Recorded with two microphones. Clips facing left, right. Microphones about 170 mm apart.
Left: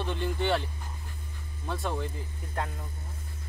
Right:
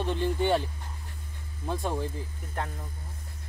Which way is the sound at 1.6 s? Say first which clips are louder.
Right 2 dB; 15° right (ahead or behind).